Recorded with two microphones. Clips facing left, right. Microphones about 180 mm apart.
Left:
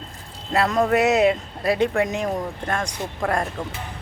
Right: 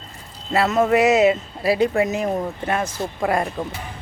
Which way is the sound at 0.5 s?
5° right (ahead or behind).